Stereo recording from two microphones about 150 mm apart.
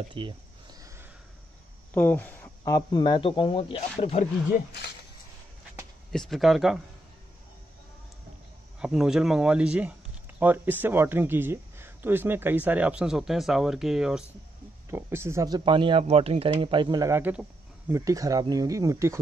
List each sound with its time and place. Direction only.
0.1 s a sound: 30° right (ahead or behind)
2.0 s speech: 10° left (ahead or behind)
2.6 s a man's voice: 25° left (ahead or behind); by 4.3 s 40° left (ahead or behind)
6.1 s speech: centre (ahead or behind)
8.7 s speech: 5° right (ahead or behind)
14.9 s speech: 15° right (ahead or behind)
17.1 s speech: 15° right (ahead or behind)